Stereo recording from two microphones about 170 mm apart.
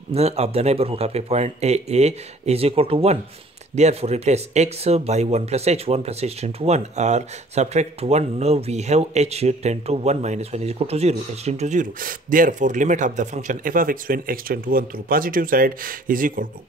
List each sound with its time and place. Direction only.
0.1 s speech: 40° right (ahead or behind); by 16.4 s 55° right (ahead or behind)